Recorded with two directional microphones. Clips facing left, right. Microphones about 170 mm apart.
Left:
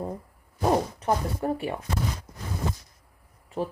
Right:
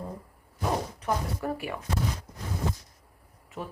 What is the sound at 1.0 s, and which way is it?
Speech, 30° left (ahead or behind).